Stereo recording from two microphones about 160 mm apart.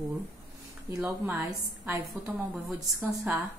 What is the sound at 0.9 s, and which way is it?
Speech, 5° right (ahead or behind).